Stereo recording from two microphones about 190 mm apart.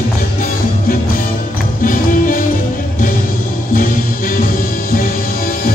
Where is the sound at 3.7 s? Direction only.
45° left (ahead or behind).